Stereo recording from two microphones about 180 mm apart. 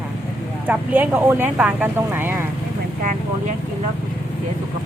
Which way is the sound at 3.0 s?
45° right (ahead or behind).